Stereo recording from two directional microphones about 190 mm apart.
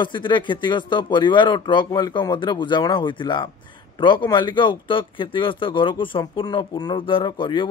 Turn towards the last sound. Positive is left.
turn(degrees=25)  # may be behind; listen again after turning